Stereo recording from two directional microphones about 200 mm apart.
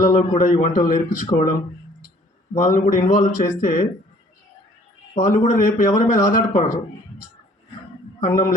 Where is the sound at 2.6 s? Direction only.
40° left (ahead or behind).